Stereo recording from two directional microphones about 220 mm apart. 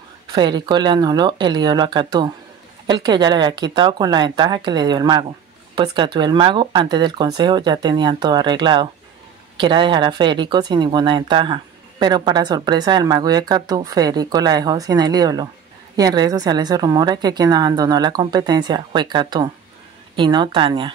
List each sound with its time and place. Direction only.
0.3 s speech: 20° right (ahead or behind)